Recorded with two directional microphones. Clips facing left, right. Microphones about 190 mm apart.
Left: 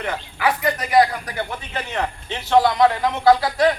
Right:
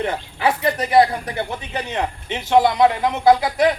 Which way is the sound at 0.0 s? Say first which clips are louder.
Right 2 dB; 25° right (ahead or behind).